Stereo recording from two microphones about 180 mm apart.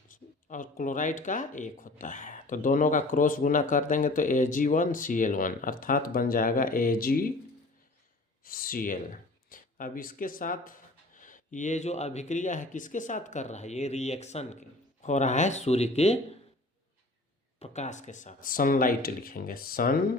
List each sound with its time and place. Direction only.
0.1 s speech: 45° left (ahead or behind)
8.4 s speech: 50° left (ahead or behind); by 16.1 s 35° left (ahead or behind)
17.6 s speech: 40° left (ahead or behind)